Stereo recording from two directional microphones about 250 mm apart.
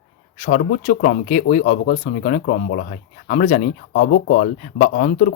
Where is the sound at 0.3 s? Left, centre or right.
Left.